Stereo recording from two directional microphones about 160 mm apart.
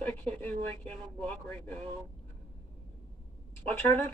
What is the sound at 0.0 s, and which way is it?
Speech, 10° left (ahead or behind).